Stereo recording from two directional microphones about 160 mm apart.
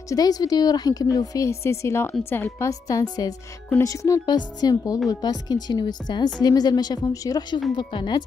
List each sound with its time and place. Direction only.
0.1 s a woman's voice: 25° left (ahead or behind)